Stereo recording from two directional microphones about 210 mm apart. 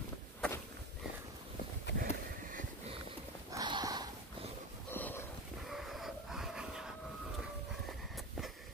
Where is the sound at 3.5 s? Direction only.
20° right (ahead or behind).